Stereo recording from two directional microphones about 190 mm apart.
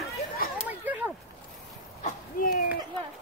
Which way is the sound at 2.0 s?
45° left (ahead or behind).